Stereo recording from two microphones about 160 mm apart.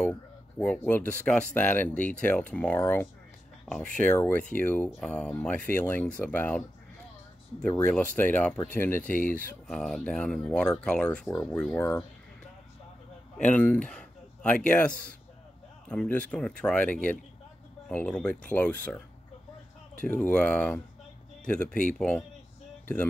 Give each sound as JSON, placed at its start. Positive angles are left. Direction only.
{"t": 0.6, "sound": "speech", "side_deg": 10}
{"t": 8.2, "sound": "speech", "side_deg": 10}
{"t": 9.1, "sound": "speech", "side_deg": 60}
{"t": 9.7, "sound": "speech", "side_deg": 0}
{"t": 13.5, "sound": "speech", "side_deg": 10}
{"t": 20.1, "sound": "speech", "side_deg": 10}